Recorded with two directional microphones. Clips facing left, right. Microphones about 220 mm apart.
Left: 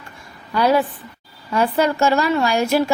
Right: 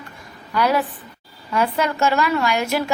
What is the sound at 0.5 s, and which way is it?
A woman's voice, 30° left (ahead or behind).